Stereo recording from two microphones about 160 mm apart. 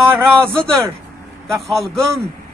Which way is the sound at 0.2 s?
5° left (ahead or behind).